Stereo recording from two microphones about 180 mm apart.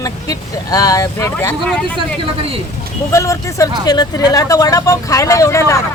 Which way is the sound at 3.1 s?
15° left (ahead or behind).